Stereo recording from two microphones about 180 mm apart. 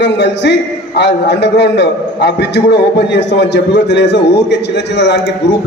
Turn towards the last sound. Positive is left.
turn(degrees=70)  # may be behind; listen again after turning